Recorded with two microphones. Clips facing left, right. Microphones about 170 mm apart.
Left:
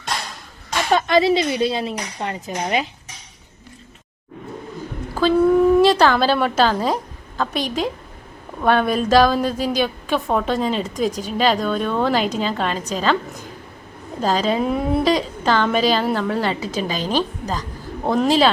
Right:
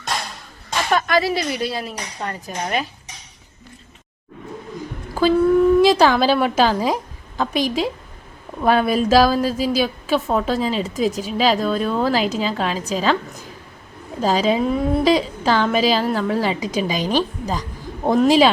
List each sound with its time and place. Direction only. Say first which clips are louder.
0.9 s speech: left 4 dB; 25° left (ahead or behind)
5.8 s a woman's voice: right 1 dB; 10° right (ahead or behind)
14.2 s a woman's voice: right 2 dB; 5° right (ahead or behind)
14.6 s a woman's voice: right 1 dB; 5° left (ahead or behind)
15.0 s a woman's voice: right 2 dB; 10° right (ahead or behind)